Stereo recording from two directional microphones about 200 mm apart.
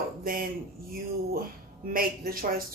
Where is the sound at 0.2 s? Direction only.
45° right (ahead or behind).